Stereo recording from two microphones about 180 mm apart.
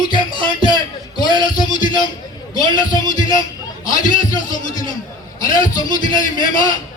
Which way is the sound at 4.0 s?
45° left (ahead or behind).